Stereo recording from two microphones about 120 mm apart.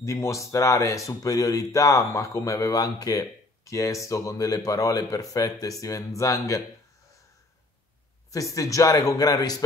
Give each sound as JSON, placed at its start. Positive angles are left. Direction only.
{"t": 0.0, "sound": "speech", "side_deg": 25}
{"t": 8.3, "sound": "speech", "side_deg": 25}